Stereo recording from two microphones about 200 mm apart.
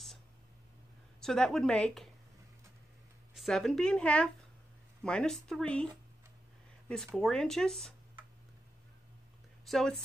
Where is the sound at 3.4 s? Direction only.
Centre (ahead or behind).